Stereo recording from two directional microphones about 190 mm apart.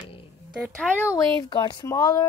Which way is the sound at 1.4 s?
25° left (ahead or behind).